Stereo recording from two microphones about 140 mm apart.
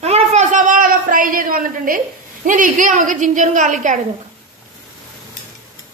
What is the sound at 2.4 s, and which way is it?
A woman's voice, 70° right (ahead or behind).